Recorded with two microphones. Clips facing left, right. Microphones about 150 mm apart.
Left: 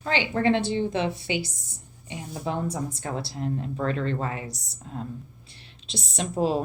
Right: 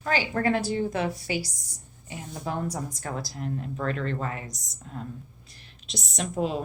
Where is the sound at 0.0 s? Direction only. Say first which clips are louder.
Left 2 dB; 25° left (ahead or behind).